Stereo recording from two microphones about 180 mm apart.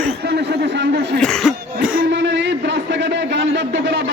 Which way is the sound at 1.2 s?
Centre (ahead or behind).